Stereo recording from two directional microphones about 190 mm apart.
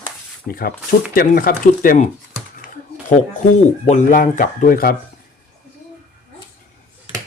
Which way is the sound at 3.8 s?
40° left (ahead or behind).